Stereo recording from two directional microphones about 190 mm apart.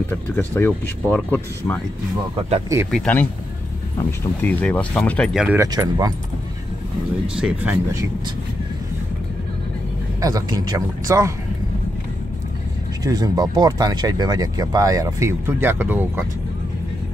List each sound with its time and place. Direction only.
0.1 s speech: 10° left (ahead or behind)
2.9 s speech: 5° left (ahead or behind)
5.6 s speech: 20° right (ahead or behind)
7.2 s speech: 5° right (ahead or behind)
10.2 s speech: 20° right (ahead or behind)
13.0 s speech: 20° right (ahead or behind)